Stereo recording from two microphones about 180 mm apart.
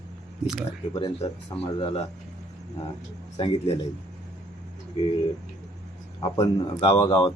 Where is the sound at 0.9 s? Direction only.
30° left (ahead or behind).